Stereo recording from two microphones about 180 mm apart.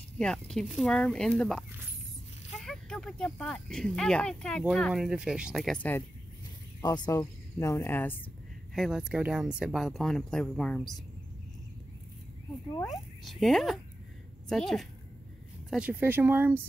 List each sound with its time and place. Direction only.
0.2 s speech: 5° left (ahead or behind)
2.6 s speech: centre (ahead or behind)
6.8 s speech: 20° left (ahead or behind)
8.7 s speech: centre (ahead or behind)
12.8 s speech: centre (ahead or behind)